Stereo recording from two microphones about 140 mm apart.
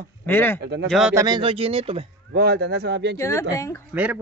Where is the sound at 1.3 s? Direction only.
40° right (ahead or behind).